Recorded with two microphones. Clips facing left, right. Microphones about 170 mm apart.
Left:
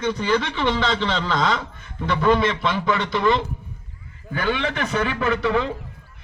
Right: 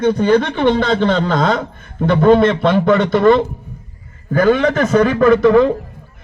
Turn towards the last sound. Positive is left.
turn(degrees=-45)  # may be behind; listen again after turning